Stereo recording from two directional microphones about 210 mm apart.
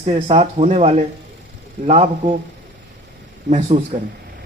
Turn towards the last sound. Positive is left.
turn(degrees=-35)  # may be behind; listen again after turning